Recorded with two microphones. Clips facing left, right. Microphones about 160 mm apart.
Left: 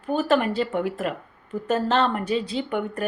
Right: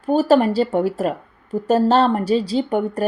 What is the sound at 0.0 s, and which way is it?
Speech, 35° right (ahead or behind).